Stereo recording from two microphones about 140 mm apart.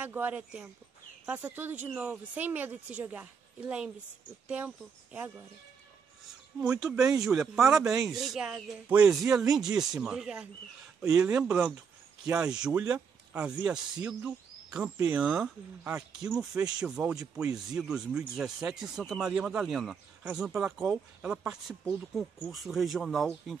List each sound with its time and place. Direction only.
0.0 s speech: 10° right (ahead or behind)
6.7 s speech: 10° right (ahead or behind)